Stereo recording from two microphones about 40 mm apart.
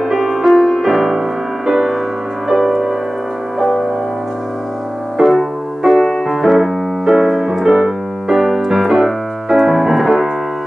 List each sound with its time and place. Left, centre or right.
0.1 s music: centre
5.2 s piano: centre
5.9 s piano: centre